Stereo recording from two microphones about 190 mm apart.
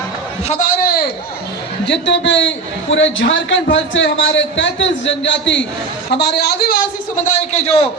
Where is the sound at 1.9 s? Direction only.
70° left (ahead or behind).